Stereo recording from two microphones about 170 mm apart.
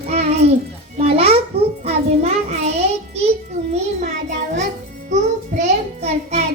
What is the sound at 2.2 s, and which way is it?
Child singing, 40° right (ahead or behind).